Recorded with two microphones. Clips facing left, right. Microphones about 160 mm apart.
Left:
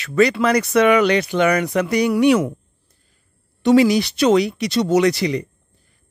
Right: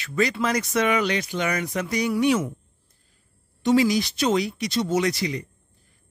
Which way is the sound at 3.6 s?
70° left (ahead or behind).